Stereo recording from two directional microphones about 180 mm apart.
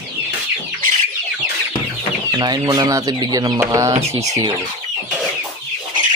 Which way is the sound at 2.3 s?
20° right (ahead or behind).